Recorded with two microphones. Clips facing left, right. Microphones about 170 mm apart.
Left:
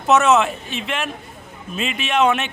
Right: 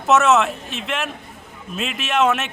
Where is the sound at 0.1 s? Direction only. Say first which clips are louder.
Left 1 dB; centre (ahead or behind).